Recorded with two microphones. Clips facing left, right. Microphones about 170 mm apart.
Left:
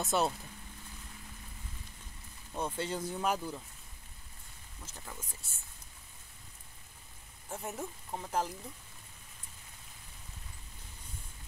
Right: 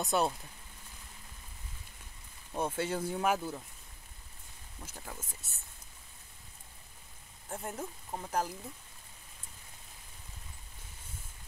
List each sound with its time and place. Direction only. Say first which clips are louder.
0.0 s speech: right 1 dB; centre (ahead or behind)
2.5 s speech: right 2 dB; 10° right (ahead or behind)
4.8 s speech: right 2 dB; 10° right (ahead or behind)
7.4 s speech: even; centre (ahead or behind)